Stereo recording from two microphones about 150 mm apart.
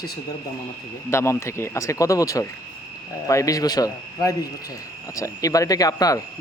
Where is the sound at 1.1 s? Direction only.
20° left (ahead or behind).